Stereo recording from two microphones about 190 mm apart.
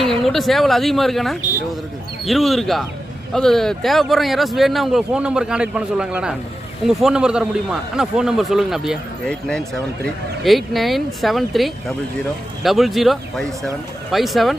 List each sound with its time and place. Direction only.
0.2 s speech: centre (ahead or behind)